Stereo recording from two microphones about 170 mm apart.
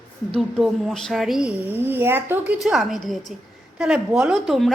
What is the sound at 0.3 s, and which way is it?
A woman's voice, centre (ahead or behind).